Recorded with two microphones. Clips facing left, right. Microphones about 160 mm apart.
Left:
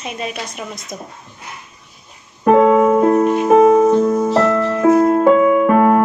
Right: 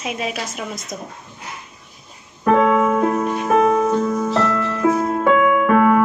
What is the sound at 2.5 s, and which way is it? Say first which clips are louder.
Music: left 5 dB; 35° left (ahead or behind).